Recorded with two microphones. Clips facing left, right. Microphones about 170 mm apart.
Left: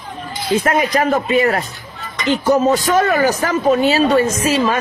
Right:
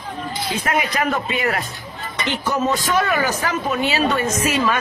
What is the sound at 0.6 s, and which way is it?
Speech, 40° left (ahead or behind).